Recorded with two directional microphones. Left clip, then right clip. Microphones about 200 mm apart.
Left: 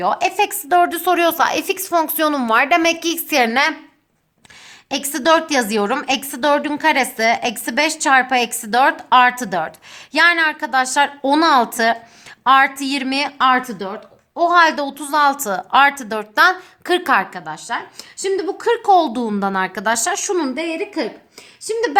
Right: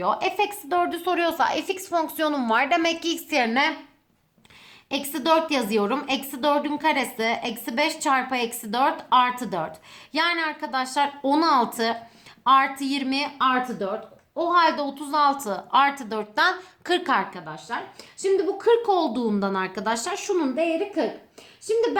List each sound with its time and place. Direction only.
0.0 s a woman's voice: 45° left (ahead or behind)
4.9 s a woman's voice: 40° left (ahead or behind)